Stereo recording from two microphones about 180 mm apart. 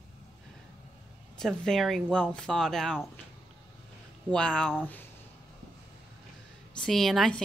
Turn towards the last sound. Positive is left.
turn(degrees=0)  # may be behind; listen again after turning